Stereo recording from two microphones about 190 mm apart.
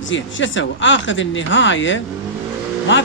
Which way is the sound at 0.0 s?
80° left.